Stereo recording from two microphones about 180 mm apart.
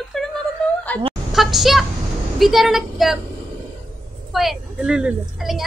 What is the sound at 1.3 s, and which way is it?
A child's voice, centre (ahead or behind).